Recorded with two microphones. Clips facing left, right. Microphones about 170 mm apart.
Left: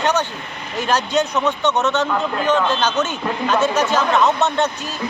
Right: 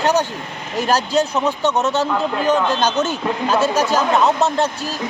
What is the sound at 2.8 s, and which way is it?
A man's voice, 35° right (ahead or behind).